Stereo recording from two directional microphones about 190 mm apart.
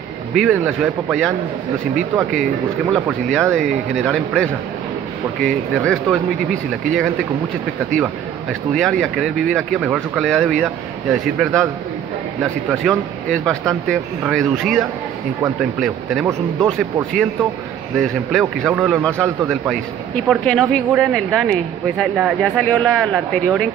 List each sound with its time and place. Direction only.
0.3 s speech: centre (ahead or behind)
7.9 s speech: centre (ahead or behind)
12.6 s speech: centre (ahead or behind)